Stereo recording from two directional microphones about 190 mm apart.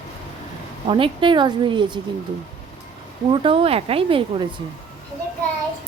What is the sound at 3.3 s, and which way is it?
A woman's voice, 30° right (ahead or behind).